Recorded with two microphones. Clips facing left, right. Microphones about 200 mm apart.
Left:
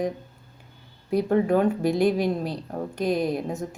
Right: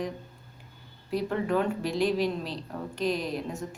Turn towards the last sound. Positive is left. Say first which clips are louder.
# left 6 dB
turn(degrees=50)  # may be behind; listen again after turning